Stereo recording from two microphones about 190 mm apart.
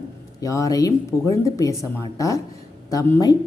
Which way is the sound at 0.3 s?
15° left (ahead or behind).